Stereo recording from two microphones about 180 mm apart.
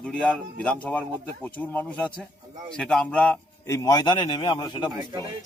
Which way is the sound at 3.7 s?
20° left (ahead or behind).